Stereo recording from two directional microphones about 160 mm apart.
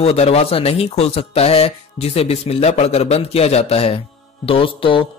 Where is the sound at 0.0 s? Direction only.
40° left (ahead or behind).